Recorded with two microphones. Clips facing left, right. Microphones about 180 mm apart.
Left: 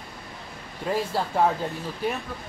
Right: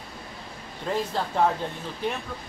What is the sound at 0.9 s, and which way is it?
Speech, 5° left (ahead or behind).